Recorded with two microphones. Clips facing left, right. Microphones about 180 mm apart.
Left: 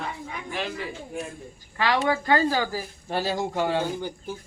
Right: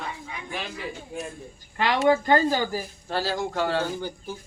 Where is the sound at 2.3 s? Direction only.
20° right (ahead or behind).